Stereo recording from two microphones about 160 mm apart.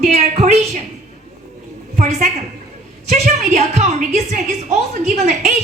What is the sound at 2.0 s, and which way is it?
A woman's voice, 45° right (ahead or behind).